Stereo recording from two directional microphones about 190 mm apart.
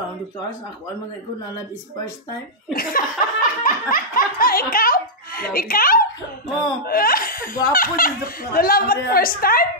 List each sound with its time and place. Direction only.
2.7 s laughter: 50° left (ahead or behind)
6.9 s speech: 50° left (ahead or behind)